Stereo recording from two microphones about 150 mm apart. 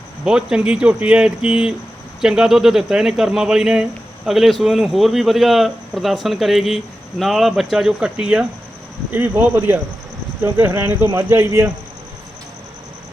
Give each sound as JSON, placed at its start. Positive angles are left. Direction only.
{"t": 0.3, "sound": "speech", "side_deg": -5}